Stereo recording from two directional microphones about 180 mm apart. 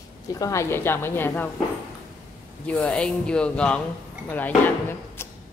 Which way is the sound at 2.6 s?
5° left (ahead or behind).